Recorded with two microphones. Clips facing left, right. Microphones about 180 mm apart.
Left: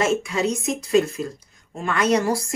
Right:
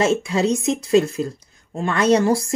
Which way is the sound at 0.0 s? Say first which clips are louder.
Right 3 dB; 30° right (ahead or behind).